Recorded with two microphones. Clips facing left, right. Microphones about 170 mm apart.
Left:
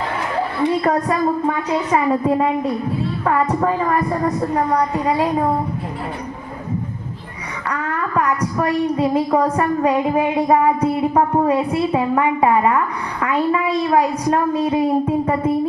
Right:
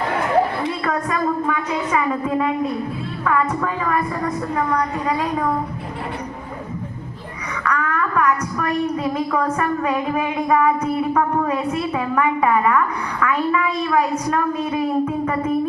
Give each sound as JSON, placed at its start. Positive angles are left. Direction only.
{"t": 0.9, "sound": "a woman's voice", "side_deg": 35}
{"t": 7.6, "sound": "a woman's voice", "side_deg": 30}